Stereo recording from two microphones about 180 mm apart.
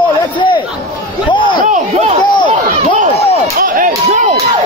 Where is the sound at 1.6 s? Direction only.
40° right (ahead or behind).